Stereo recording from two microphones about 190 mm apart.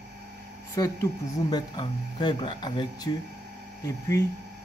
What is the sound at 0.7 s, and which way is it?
A man's voice, 15° left (ahead or behind).